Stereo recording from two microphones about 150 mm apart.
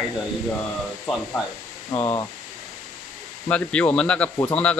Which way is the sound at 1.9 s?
40° left (ahead or behind).